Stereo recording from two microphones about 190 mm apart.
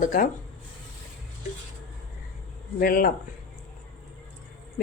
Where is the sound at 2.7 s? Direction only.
50° left (ahead or behind).